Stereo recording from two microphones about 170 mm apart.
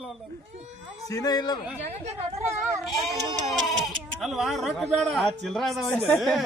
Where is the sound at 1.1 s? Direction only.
20° left (ahead or behind).